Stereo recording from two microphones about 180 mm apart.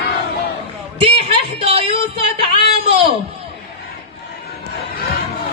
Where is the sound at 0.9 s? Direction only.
30° right (ahead or behind).